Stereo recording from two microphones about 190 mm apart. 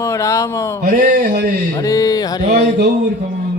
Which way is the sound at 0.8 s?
45° right (ahead or behind).